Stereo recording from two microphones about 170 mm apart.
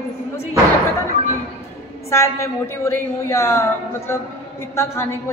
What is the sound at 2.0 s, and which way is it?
A woman's voice, 15° left (ahead or behind).